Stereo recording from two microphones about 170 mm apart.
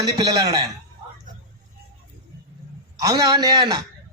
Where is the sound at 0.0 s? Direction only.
20° right (ahead or behind).